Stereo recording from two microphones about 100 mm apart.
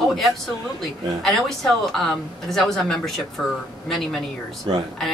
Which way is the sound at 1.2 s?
Centre (ahead or behind).